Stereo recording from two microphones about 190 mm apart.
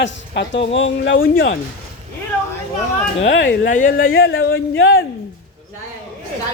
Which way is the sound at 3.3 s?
70° left (ahead or behind).